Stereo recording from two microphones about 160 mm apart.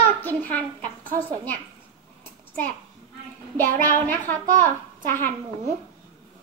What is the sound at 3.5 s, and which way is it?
Speech, 10° left (ahead or behind).